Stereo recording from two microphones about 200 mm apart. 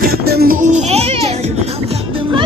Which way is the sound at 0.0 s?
50° right (ahead or behind).